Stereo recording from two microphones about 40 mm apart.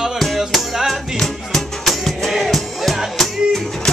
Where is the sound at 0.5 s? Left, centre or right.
Centre.